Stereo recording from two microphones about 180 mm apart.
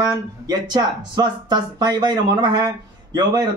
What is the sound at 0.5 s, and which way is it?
Speech, 20° right (ahead or behind).